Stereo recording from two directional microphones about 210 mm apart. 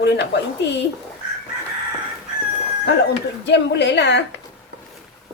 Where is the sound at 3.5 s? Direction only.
55° left (ahead or behind).